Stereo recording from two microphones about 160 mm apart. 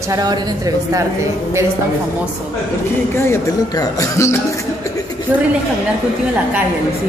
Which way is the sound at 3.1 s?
15° left (ahead or behind).